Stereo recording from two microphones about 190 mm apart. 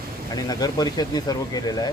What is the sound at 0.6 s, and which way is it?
Speech, 20° left (ahead or behind).